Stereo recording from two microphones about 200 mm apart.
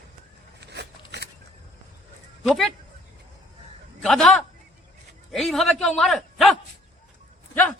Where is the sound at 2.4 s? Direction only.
Centre (ahead or behind).